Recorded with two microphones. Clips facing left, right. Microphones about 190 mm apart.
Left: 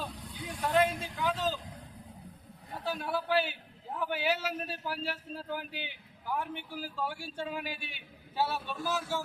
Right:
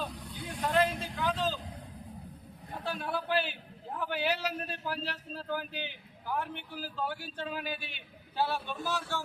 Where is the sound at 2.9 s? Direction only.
5° left (ahead or behind).